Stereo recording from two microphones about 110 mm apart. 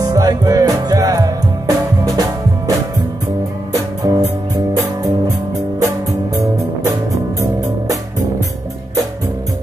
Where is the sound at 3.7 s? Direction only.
35° right (ahead or behind).